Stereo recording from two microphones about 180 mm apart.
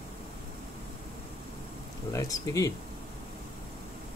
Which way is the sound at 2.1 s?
20° left (ahead or behind).